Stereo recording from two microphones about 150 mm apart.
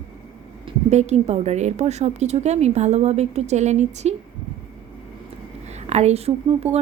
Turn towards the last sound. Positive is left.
turn(degrees=-45)  # may be behind; listen again after turning